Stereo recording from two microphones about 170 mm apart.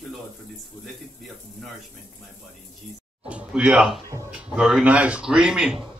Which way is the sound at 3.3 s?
5° right (ahead or behind).